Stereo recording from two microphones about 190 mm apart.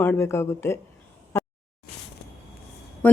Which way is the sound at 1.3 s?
15° left (ahead or behind).